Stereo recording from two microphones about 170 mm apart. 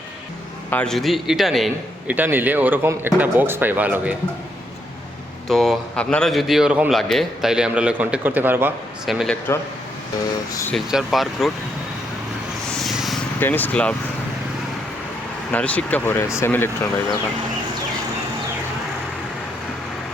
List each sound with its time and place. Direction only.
0.7 s a man's voice: 5° left (ahead or behind)
5.5 s a man's voice: centre (ahead or behind)
9.0 s a man's voice: centre (ahead or behind)
10.5 s speech: 15° left (ahead or behind)
10.8 s a man's voice: centre (ahead or behind)
12.6 s purr: centre (ahead or behind)
13.4 s speech: 10° left (ahead or behind)
15.5 s speech: 10° left (ahead or behind)